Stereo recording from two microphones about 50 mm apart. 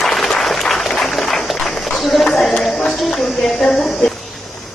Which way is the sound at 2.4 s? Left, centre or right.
Centre.